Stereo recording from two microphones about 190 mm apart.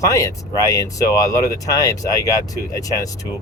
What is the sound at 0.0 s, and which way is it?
Speech, 15° left (ahead or behind).